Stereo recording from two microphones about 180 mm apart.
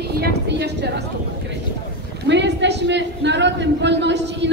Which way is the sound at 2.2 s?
80° right.